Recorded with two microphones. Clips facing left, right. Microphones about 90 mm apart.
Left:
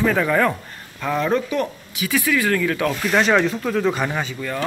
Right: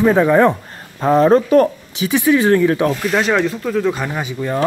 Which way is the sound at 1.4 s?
50° right (ahead or behind).